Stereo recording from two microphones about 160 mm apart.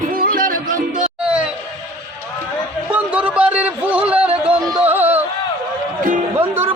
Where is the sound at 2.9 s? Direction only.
10° right (ahead or behind).